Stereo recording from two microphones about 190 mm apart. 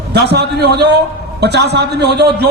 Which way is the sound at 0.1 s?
60° right (ahead or behind).